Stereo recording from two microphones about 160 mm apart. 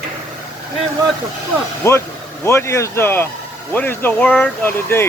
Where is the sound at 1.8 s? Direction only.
15° left (ahead or behind).